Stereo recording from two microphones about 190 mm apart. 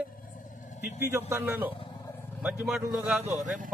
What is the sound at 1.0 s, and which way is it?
A man's voice, 10° right (ahead or behind).